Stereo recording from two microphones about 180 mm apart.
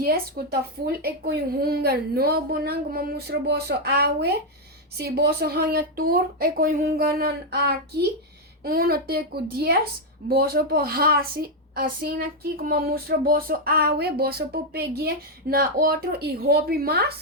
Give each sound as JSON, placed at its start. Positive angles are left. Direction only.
{"t": 0.0, "sound": "speech", "side_deg": -55}